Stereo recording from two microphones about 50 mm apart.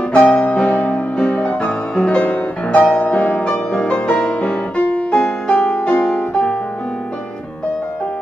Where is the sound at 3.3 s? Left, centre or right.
Centre.